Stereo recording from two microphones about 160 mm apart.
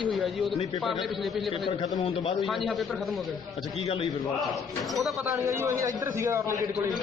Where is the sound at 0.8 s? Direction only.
Centre (ahead or behind).